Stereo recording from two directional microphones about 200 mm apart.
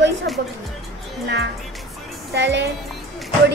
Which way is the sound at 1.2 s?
60° right (ahead or behind).